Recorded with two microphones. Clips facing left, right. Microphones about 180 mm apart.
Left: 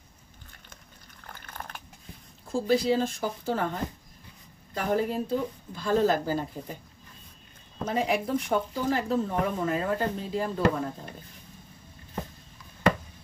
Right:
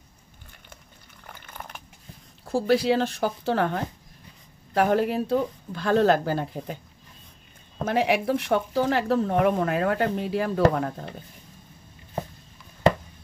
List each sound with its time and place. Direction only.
1.4 s dog: 10° right (ahead or behind)
2.5 s speech: 70° right (ahead or behind)
7.8 s speech: 75° right (ahead or behind)